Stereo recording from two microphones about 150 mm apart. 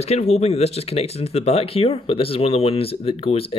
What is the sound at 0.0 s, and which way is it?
Speech, 45° left (ahead or behind).